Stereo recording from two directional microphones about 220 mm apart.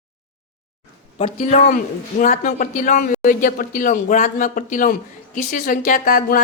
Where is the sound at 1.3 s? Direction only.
30° left (ahead or behind).